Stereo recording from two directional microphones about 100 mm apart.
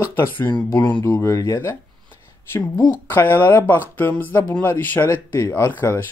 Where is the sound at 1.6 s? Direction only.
25° left (ahead or behind).